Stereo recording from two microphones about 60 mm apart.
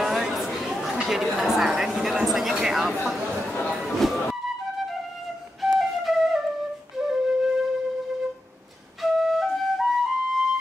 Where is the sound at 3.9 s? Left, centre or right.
Centre.